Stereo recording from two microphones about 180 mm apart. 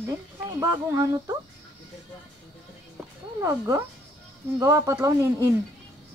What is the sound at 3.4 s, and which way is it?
Speech, 15° right (ahead or behind).